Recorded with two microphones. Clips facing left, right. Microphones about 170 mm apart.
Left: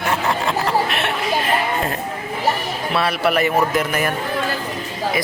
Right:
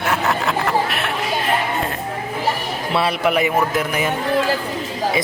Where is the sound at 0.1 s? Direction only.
Centre (ahead or behind).